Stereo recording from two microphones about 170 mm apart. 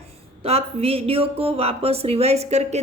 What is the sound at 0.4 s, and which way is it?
A woman's voice, 35° right (ahead or behind).